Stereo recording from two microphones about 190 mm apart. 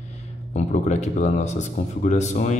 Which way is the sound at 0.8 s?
40° left (ahead or behind).